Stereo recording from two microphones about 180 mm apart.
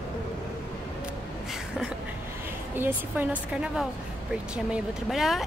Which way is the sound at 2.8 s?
10° right (ahead or behind).